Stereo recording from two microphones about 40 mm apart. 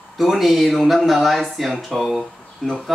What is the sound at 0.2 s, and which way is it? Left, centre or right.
Speech, centre.